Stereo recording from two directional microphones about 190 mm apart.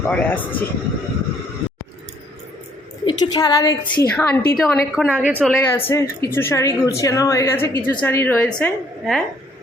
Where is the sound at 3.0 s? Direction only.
20° left (ahead or behind).